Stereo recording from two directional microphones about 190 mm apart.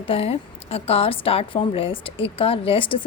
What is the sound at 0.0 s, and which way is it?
A woman's voice, 30° left (ahead or behind).